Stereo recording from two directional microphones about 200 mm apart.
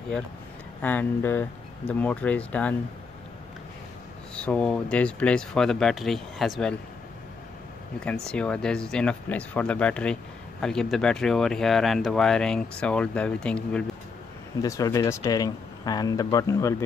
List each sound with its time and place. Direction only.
0.8 s speech: 10° left (ahead or behind)
4.4 s speech: 5° left (ahead or behind)
8.0 s speech: 5° left (ahead or behind)
14.6 s speech: 15° left (ahead or behind)